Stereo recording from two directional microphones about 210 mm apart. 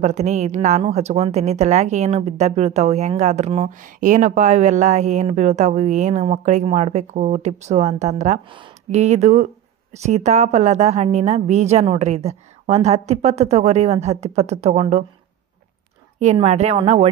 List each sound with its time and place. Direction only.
0.0 s a woman's voice: 35° right (ahead or behind)
16.2 s a woman's voice: 30° right (ahead or behind)